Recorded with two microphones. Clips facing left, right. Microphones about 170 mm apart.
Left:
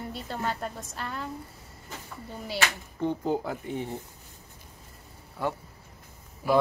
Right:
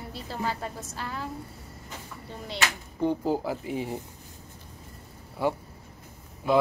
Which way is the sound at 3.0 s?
10° right (ahead or behind).